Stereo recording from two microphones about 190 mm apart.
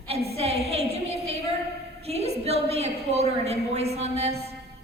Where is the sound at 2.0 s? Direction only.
35° right (ahead or behind).